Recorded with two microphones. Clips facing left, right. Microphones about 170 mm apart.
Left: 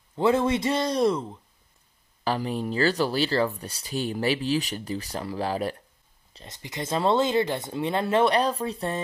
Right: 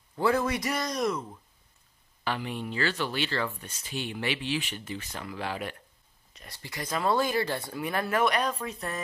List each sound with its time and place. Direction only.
0.1 s speech: 20° left (ahead or behind)
2.2 s speech: 35° left (ahead or behind)
6.3 s speech: 20° left (ahead or behind)